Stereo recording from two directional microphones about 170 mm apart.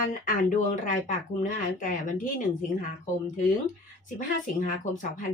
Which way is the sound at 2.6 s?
50° left (ahead or behind).